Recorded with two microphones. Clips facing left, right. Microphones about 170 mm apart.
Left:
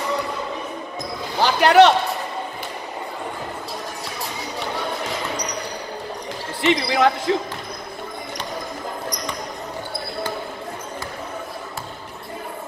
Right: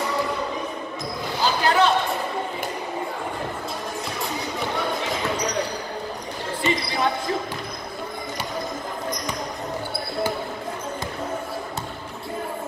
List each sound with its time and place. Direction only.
1.4 s speech: 80° left
6.6 s speech: 90° left